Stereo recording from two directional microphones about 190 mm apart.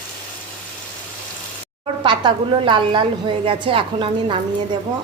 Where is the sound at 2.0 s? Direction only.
25° right (ahead or behind).